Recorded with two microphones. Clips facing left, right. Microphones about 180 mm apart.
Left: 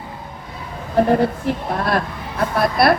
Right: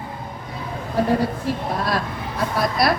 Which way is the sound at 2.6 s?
60° left (ahead or behind).